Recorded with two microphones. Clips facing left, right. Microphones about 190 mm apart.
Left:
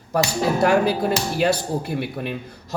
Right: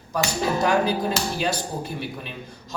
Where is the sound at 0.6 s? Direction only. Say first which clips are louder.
Left 4 dB; 60° left (ahead or behind).